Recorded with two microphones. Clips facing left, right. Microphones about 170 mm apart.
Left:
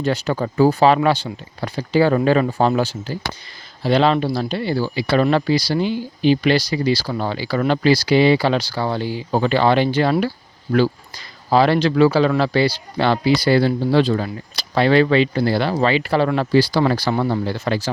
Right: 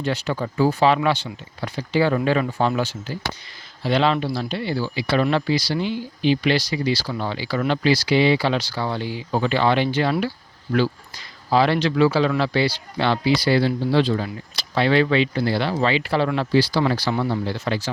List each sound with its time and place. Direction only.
0.0 s speech: 40° left (ahead or behind)